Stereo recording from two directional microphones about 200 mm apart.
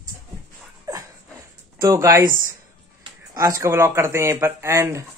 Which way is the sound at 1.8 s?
15° right (ahead or behind).